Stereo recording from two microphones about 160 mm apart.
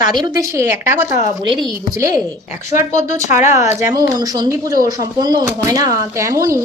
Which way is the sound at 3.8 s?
20° right (ahead or behind).